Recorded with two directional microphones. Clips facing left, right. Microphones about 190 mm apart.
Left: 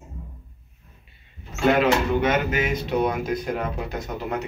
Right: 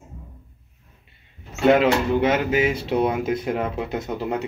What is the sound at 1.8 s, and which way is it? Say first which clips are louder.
Speech: right 1 dB; 30° right (ahead or behind).